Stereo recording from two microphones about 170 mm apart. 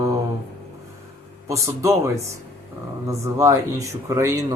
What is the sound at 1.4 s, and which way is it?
Speech, 20° right (ahead or behind).